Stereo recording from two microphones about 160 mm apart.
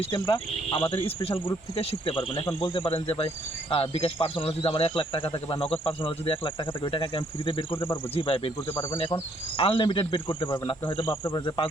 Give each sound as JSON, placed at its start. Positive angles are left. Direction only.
{"t": 0.0, "sound": "speech", "side_deg": 30}
{"t": 8.7, "sound": "speech", "side_deg": 20}
{"t": 9.1, "sound": "speech", "side_deg": 35}
{"t": 11.0, "sound": "speech", "side_deg": 15}
{"t": 11.4, "sound": "speech", "side_deg": 30}